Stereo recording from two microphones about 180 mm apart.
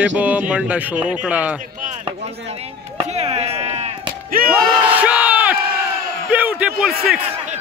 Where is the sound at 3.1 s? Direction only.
35° right (ahead or behind).